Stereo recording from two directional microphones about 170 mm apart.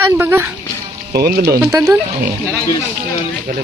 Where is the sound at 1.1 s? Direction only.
65° right (ahead or behind).